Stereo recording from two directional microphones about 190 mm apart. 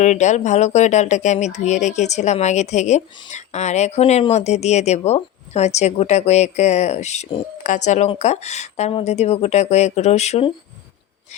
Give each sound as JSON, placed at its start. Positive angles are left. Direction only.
{"t": 0.0, "sound": "speech", "side_deg": 40}